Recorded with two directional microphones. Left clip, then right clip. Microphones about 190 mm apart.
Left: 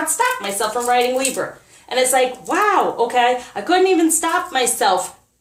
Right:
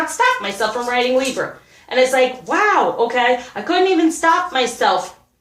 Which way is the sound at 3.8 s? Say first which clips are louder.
Right 3 dB; 45° left (ahead or behind).